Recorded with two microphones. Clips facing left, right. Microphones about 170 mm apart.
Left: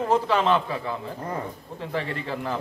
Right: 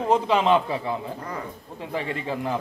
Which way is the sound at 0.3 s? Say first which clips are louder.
Right 2 dB; 20° right (ahead or behind).